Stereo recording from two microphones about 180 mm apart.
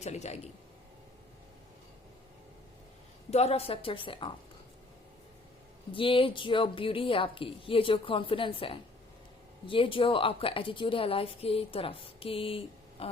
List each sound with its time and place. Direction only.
0.0 s a woman's voice: 40° left (ahead or behind)
3.2 s a woman's voice: 35° left (ahead or behind)
5.9 s a woman's voice: 30° left (ahead or behind)